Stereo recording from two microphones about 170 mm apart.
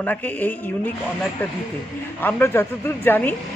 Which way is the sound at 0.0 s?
10° left (ahead or behind).